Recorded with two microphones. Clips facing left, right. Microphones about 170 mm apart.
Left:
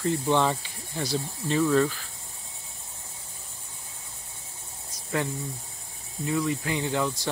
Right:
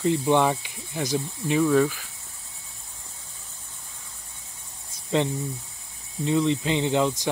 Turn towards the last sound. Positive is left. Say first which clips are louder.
# right 5 dB
turn(degrees=-20)  # may be behind; listen again after turning